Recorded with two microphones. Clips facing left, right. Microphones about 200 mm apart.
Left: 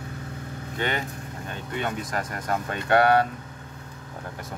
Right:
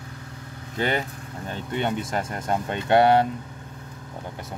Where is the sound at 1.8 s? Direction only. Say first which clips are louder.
Right 3 dB; 25° right (ahead or behind).